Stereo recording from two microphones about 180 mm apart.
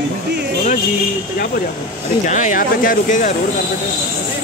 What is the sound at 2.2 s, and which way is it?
Speech, 45° left (ahead or behind).